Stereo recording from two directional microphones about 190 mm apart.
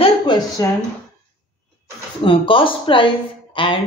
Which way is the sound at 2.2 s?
25° left (ahead or behind).